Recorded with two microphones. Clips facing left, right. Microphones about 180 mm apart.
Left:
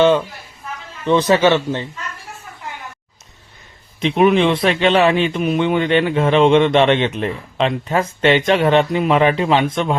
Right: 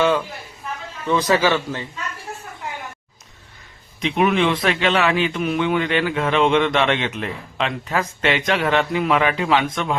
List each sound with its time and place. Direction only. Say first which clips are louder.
1.0 s a man's voice: left 5 dB; 25° left (ahead or behind)
4.0 s a man's voice: left 5 dB; 25° left (ahead or behind)